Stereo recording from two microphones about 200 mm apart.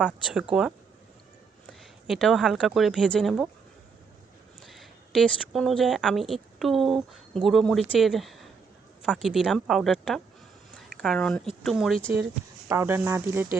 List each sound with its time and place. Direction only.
0.5 s speech: 5° right (ahead or behind)
1.8 s speech: centre (ahead or behind)
4.6 s speech: centre (ahead or behind)
12.6 s speech: 10° right (ahead or behind)